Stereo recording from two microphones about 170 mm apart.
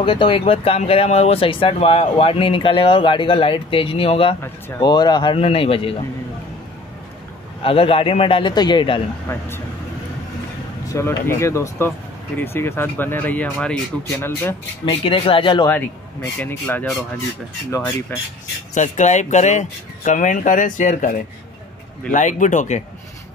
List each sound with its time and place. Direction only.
0.0 s speech: 30° left (ahead or behind)
4.4 s speech: 20° left (ahead or behind)
7.6 s speech: 35° left (ahead or behind)
9.3 s speech: 15° left (ahead or behind)
10.9 s speech: 15° left (ahead or behind)
14.9 s speech: 35° left (ahead or behind)
15.7 s speech: 10° left (ahead or behind)
18.1 s speech: 10° left (ahead or behind)
18.8 s speech: 45° left (ahead or behind)